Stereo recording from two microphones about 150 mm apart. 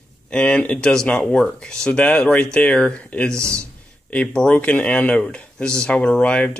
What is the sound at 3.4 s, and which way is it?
Speech, 20° right (ahead or behind).